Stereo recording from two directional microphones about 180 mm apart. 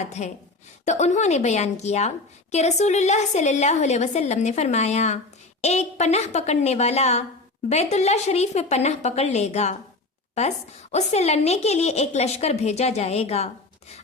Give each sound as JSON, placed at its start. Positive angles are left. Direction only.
{"t": 0.0, "sound": "a woman's voice", "side_deg": 40}